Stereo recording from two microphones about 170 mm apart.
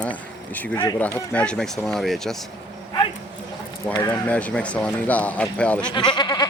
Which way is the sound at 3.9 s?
25° left (ahead or behind).